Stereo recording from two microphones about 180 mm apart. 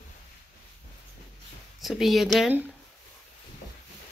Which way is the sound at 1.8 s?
Centre (ahead or behind).